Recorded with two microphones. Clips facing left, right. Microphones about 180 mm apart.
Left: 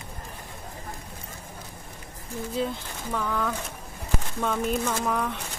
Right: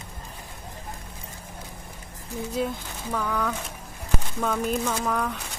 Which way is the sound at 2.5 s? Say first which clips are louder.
Even; centre (ahead or behind).